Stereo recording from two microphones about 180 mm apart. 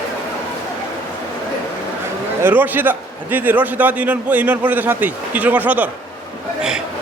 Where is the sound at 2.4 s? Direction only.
10° right (ahead or behind).